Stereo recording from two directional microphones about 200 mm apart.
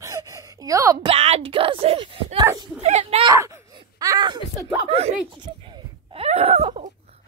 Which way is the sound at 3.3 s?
15° right (ahead or behind).